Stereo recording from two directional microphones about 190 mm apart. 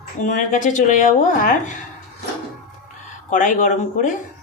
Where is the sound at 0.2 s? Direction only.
40° left (ahead or behind).